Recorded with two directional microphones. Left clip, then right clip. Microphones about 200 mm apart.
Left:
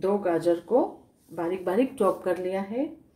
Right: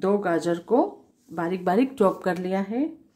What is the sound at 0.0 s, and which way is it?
Speech, 50° right (ahead or behind).